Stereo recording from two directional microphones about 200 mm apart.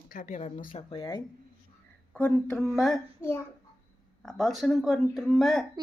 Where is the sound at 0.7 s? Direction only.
25° left (ahead or behind).